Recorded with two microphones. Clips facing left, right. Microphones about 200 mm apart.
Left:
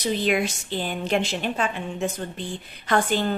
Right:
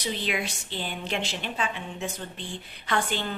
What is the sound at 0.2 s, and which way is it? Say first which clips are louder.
A woman's voice: left 7 dB; 45° left (ahead or behind).